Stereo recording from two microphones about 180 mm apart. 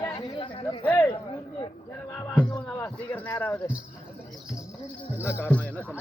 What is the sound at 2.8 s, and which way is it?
Speech, 10° left (ahead or behind).